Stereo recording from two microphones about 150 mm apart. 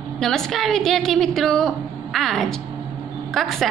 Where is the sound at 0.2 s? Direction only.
5° left (ahead or behind).